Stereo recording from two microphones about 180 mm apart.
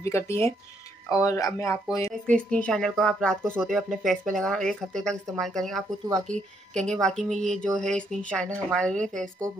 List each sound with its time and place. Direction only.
0.0 s speech: 15° left (ahead or behind)
2.2 s speech: 5° left (ahead or behind)